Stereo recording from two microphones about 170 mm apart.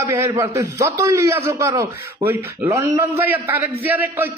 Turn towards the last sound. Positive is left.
turn(degrees=-10)  # may be behind; listen again after turning